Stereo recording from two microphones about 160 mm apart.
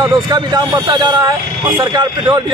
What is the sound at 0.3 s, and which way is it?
A man's voice, 25° right (ahead or behind).